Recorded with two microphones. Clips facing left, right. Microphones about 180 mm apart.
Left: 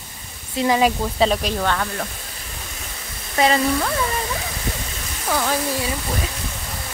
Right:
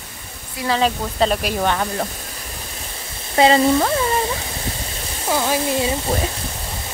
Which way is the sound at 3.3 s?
30° right (ahead or behind).